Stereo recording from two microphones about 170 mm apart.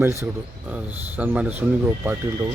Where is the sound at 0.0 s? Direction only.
15° right (ahead or behind).